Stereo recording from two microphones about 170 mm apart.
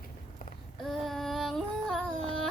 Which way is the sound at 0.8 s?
Centre (ahead or behind).